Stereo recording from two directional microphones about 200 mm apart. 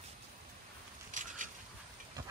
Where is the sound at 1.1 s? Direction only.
40° right (ahead or behind).